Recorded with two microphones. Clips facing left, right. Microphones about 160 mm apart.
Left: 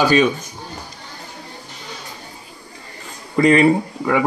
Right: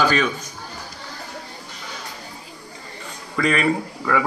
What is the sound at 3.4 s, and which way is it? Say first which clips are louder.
Speech: left 7 dB; 25° left (ahead or behind).